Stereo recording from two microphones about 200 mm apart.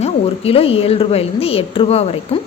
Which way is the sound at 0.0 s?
30° left (ahead or behind).